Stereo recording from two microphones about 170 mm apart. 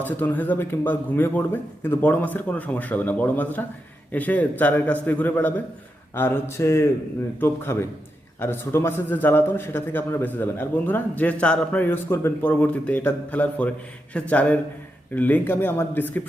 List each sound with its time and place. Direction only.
0.0 s speech: 10° left (ahead or behind)